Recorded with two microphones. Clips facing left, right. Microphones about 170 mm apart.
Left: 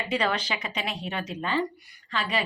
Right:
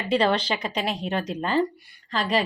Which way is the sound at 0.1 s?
35° right (ahead or behind).